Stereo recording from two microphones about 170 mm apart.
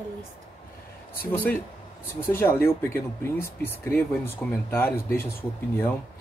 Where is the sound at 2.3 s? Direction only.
15° left (ahead or behind).